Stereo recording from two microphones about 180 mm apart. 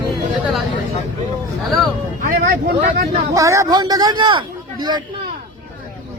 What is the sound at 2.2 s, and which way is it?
Speech, 55° right (ahead or behind).